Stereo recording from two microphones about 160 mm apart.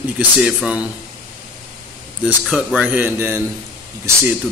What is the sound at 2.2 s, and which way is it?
Speech, 5° right (ahead or behind).